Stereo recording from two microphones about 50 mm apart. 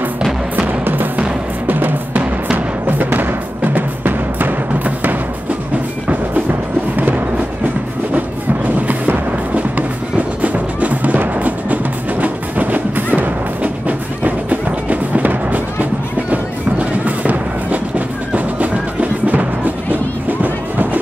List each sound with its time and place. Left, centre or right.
0.7 s music: right
8.8 s music: right